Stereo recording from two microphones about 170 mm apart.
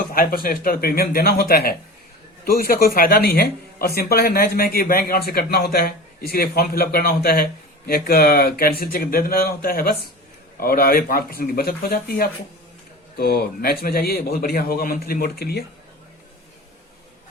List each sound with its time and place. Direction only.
0.1 s a man's voice: 60° left (ahead or behind)